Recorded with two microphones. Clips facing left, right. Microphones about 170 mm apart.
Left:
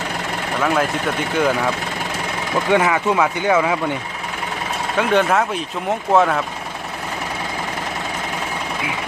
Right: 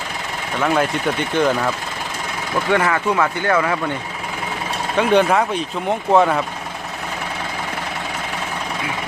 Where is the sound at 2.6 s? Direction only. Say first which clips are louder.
Left 1 dB; 15° left (ahead or behind).